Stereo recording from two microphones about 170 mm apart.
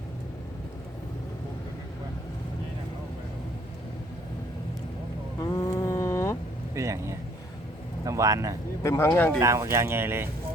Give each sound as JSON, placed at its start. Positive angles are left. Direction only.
{"t": 5.4, "sound": "a sound", "side_deg": 20}
{"t": 6.7, "sound": "speech", "side_deg": -15}
{"t": 8.8, "sound": "speech", "side_deg": 15}
{"t": 9.4, "sound": "speech", "side_deg": -20}